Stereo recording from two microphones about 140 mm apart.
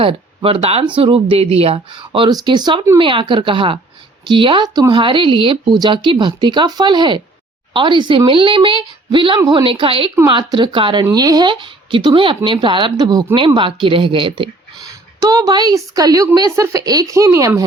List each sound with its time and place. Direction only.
0.0 s speech: 40° right (ahead or behind)
9.4 s a woman's voice: 25° right (ahead or behind)
9.6 s speech: 40° right (ahead or behind)
15.2 s a woman's voice: 25° right (ahead or behind)